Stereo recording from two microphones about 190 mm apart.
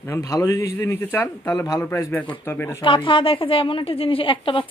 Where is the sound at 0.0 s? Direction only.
15° left (ahead or behind).